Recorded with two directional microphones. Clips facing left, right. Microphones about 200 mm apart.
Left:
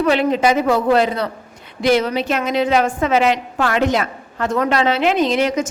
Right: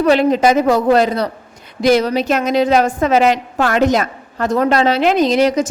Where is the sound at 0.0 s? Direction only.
40° right (ahead or behind).